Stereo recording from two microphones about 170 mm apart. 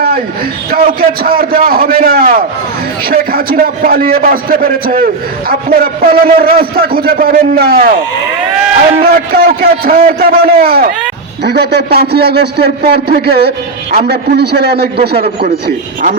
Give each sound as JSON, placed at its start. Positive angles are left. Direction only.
{"t": 0.7, "sound": "a man's voice", "side_deg": -60}
{"t": 9.0, "sound": "a man's voice", "side_deg": -60}
{"t": 15.4, "sound": "a man's voice", "side_deg": -60}